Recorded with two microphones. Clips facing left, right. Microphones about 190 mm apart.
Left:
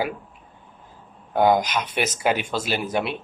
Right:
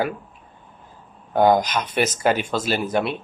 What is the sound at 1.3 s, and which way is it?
Speech, 45° right (ahead or behind).